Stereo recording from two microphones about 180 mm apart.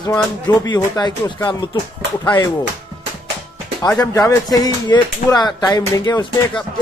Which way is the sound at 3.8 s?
20° left (ahead or behind).